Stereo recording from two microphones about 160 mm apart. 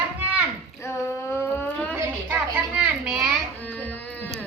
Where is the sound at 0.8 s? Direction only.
15° left (ahead or behind).